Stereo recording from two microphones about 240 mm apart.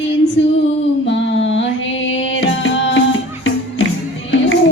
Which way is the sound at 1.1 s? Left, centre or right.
Left.